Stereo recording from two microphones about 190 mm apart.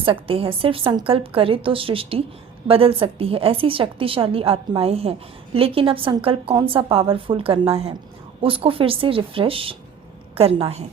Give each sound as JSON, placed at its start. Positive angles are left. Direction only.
{"t": 0.0, "sound": "a woman's voice", "side_deg": -30}